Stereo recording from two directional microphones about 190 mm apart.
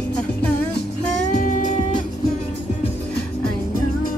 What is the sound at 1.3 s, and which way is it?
Music, 40° left (ahead or behind).